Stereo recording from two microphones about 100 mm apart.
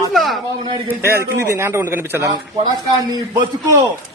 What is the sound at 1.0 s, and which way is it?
A man's voice, 25° right (ahead or behind).